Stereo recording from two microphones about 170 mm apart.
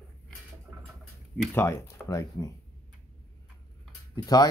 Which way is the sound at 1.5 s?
15° left (ahead or behind).